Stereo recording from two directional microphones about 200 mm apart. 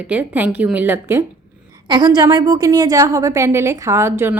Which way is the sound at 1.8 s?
25° right (ahead or behind).